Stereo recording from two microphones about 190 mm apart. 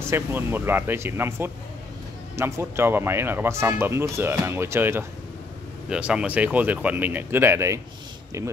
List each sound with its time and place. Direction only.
0.1 s speech: 10° right (ahead or behind)